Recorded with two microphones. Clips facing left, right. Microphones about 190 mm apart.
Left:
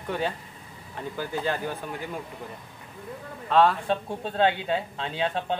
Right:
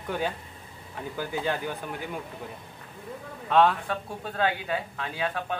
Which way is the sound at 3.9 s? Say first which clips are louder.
Left 5 dB; 25° left (ahead or behind).